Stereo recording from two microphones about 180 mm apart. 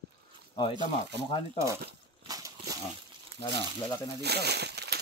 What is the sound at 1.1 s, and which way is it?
Speech, 70° right (ahead or behind).